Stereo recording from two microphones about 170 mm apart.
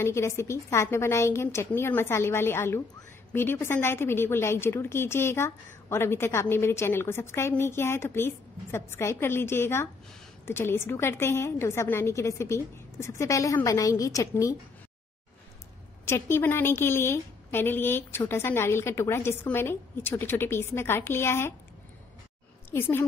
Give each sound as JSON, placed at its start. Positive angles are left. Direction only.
{"t": 0.0, "sound": "a woman's voice", "side_deg": 15}
{"t": 16.1, "sound": "a woman's voice", "side_deg": 15}
{"t": 22.7, "sound": "a woman's voice", "side_deg": 15}